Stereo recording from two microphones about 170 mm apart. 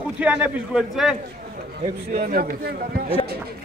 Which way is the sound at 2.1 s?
65° right (ahead or behind).